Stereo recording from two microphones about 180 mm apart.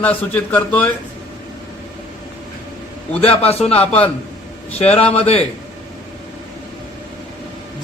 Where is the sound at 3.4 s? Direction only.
35° left (ahead or behind).